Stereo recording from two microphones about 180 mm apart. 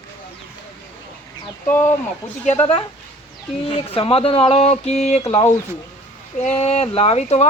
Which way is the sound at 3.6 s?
30° left (ahead or behind).